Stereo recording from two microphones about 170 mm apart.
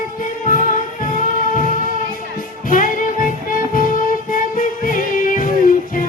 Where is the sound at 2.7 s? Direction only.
55° left (ahead or behind).